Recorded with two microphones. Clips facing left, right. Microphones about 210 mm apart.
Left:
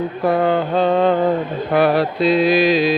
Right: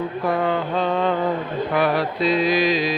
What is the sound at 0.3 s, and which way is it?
Music, 35° left (ahead or behind).